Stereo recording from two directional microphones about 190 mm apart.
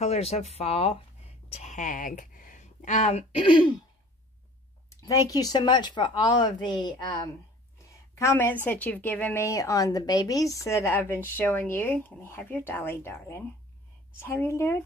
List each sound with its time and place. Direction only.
0.0 s a woman's voice: 35° left (ahead or behind)
4.8 s a woman's voice: 20° left (ahead or behind)